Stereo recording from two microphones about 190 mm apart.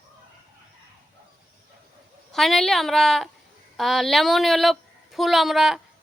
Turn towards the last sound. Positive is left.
turn(degrees=0)  # may be behind; listen again after turning